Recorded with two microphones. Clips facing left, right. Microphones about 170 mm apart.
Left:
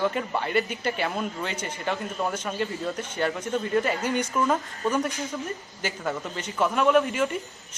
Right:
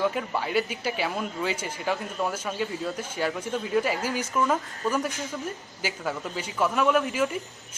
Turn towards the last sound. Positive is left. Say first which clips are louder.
# left 2 dB
turn(degrees=0)  # may be behind; listen again after turning